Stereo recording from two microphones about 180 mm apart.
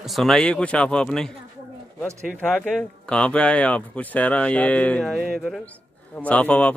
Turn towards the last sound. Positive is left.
turn(degrees=5)  # may be behind; listen again after turning